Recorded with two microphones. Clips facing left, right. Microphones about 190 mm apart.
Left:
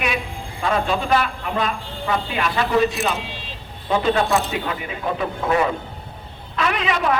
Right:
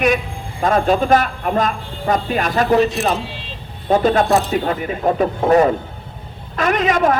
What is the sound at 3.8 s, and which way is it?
A man's voice, 45° right (ahead or behind).